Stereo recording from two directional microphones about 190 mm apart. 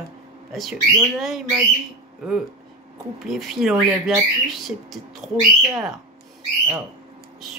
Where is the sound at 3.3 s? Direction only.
Centre (ahead or behind).